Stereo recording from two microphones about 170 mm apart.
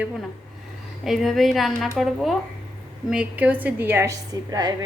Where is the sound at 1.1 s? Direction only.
Centre (ahead or behind).